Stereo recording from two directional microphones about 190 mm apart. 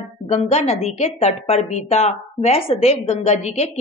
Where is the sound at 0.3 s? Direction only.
35° left (ahead or behind).